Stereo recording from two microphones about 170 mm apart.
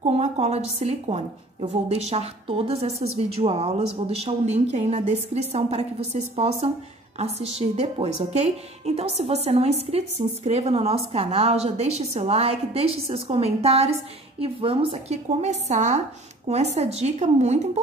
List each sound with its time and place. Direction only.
0.0 s a woman's voice: 40° right (ahead or behind)